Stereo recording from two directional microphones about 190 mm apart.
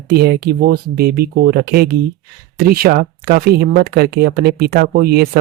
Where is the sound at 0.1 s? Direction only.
55° right (ahead or behind).